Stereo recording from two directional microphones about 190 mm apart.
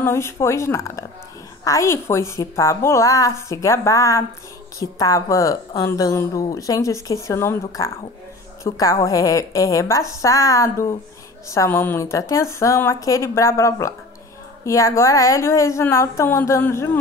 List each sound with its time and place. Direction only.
0.0 s speech: 15° left (ahead or behind)